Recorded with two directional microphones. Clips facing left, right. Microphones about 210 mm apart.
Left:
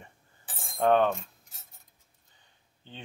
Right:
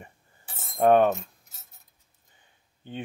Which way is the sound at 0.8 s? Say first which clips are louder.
Right 4 dB; 10° right (ahead or behind).